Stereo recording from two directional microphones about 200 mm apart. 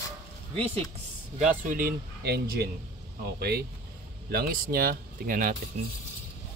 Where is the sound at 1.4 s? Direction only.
45° right (ahead or behind).